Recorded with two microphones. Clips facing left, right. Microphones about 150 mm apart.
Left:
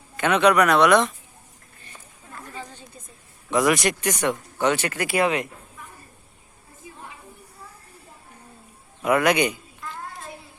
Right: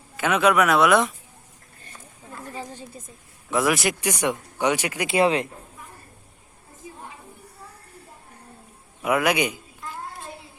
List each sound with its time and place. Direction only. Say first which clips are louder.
0.2 s speech: left 1 dB; 5° right (ahead or behind)
3.5 s speech: left 2 dB; centre (ahead or behind)
5.1 s speech: right 3 dB; 30° right (ahead or behind)
9.0 s cat: left 2 dB; 5° right (ahead or behind)